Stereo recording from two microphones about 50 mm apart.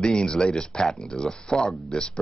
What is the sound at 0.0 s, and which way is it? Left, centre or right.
Speech, centre.